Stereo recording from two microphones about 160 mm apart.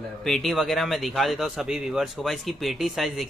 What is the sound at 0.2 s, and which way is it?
Speech, centre (ahead or behind).